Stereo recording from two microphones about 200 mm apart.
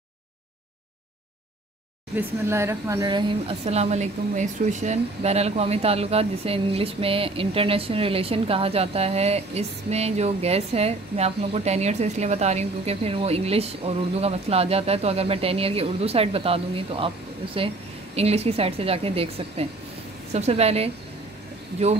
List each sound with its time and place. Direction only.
2.1 s speech: 15° right (ahead or behind)
18.1 s a woman's voice: 30° right (ahead or behind)